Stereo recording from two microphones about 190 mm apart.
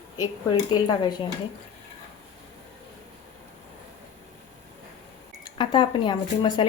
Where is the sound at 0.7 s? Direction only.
25° left (ahead or behind).